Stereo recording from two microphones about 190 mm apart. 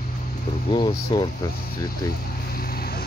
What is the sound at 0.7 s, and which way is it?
Speech, 25° left (ahead or behind).